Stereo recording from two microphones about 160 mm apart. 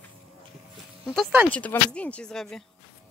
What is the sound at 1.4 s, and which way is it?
Speech, 10° left (ahead or behind).